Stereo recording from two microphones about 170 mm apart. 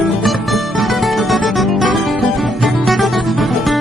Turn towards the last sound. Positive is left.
turn(degrees=0)  # may be behind; listen again after turning